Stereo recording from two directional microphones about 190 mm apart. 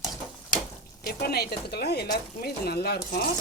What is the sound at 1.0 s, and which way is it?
Speech, 55° left (ahead or behind).